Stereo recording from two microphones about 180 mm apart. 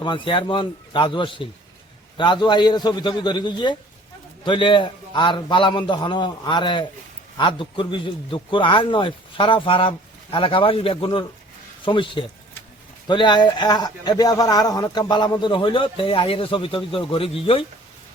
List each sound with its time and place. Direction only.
0.0 s a man's voice: 25° left (ahead or behind)